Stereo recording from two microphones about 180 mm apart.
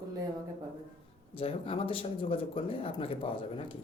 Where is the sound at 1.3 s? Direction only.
30° left (ahead or behind).